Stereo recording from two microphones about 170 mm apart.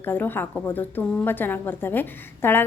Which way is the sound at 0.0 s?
10° left (ahead or behind).